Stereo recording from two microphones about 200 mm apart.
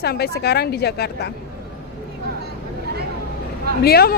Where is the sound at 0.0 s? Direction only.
55° left (ahead or behind).